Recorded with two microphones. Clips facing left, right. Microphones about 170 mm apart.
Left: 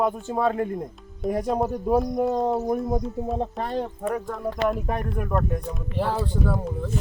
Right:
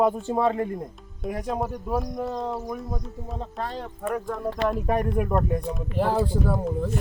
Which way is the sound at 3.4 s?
50° left (ahead or behind).